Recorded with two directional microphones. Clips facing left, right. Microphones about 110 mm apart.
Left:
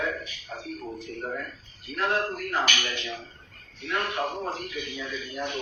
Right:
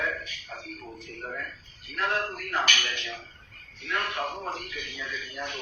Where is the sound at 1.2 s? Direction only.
20° left (ahead or behind).